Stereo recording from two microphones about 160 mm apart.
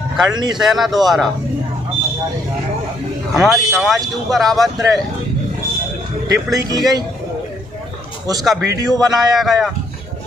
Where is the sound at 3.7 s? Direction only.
Centre (ahead or behind).